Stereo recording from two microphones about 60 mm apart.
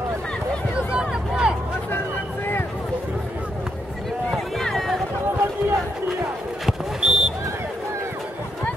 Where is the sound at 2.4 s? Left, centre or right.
Left.